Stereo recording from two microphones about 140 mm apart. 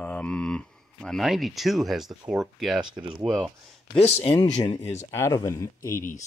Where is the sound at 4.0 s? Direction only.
50° left (ahead or behind).